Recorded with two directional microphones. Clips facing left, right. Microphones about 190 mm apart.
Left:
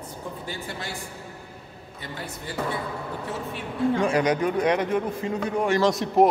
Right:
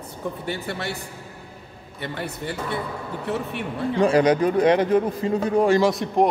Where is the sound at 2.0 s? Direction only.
65° right (ahead or behind).